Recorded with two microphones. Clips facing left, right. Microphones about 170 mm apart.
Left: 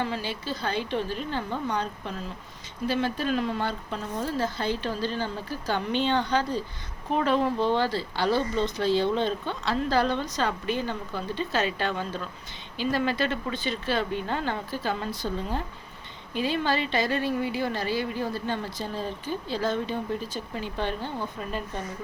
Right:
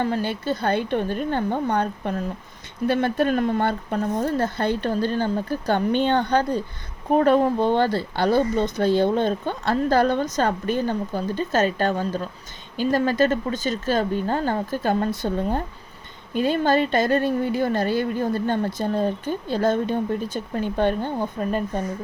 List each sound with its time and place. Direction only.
0.0 s a woman's voice: 50° right (ahead or behind)